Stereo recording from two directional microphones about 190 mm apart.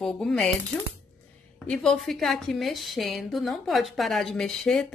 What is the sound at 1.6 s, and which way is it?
A woman's voice, 5° left (ahead or behind).